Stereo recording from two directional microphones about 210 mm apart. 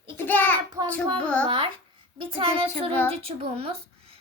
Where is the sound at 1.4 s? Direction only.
25° right (ahead or behind).